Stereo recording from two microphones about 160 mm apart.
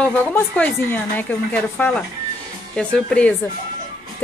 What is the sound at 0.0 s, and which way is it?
Speech, 10° left (ahead or behind).